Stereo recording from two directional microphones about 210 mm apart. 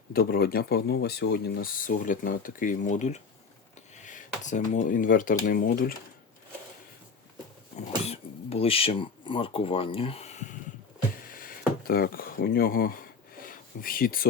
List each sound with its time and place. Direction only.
0.1 s speech: 45° left (ahead or behind)
7.8 s speech: 30° left (ahead or behind)
11.3 s a sound: 45° left (ahead or behind)